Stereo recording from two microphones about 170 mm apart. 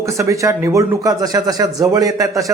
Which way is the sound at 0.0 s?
20° right (ahead or behind).